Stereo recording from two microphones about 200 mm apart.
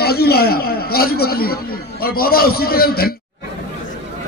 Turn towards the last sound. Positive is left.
turn(degrees=50)  # may be behind; listen again after turning